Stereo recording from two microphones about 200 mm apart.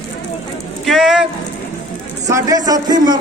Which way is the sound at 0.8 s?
Centre (ahead or behind).